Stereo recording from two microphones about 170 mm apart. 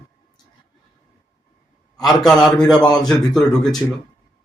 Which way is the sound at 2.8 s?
25° left (ahead or behind).